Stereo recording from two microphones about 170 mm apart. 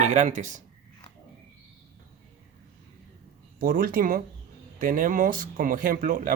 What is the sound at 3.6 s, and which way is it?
Speech, 60° right (ahead or behind).